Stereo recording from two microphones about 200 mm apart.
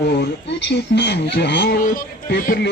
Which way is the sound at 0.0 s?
60° left (ahead or behind).